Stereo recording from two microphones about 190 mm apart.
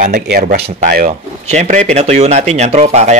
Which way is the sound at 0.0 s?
55° right (ahead or behind).